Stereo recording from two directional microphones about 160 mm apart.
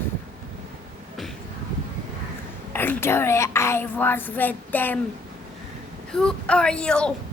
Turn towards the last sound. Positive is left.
turn(degrees=5)  # may be behind; listen again after turning